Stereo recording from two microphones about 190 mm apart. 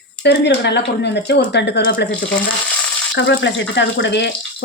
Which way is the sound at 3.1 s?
70° left (ahead or behind).